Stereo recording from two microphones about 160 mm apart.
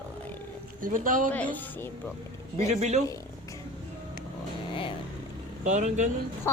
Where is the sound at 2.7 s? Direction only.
45° right (ahead or behind).